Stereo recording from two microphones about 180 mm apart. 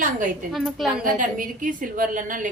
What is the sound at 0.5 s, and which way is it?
Speech, centre (ahead or behind).